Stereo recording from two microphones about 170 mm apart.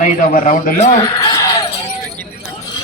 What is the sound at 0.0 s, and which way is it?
Speech, 55° left (ahead or behind).